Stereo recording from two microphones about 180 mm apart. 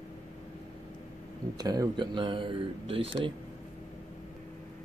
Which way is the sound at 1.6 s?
20° right (ahead or behind).